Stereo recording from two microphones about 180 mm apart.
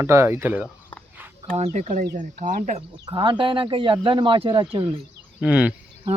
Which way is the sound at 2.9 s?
25° right (ahead or behind).